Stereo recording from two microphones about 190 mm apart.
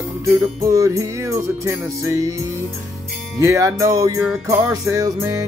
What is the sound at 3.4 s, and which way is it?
Music, 15° right (ahead or behind).